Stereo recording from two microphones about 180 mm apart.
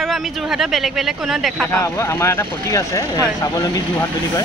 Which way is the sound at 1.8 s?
15° left (ahead or behind).